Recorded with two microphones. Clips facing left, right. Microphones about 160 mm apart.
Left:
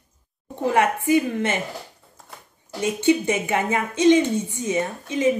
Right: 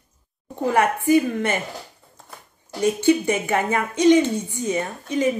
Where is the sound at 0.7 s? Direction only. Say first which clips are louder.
Right 2 dB; 20° left (ahead or behind).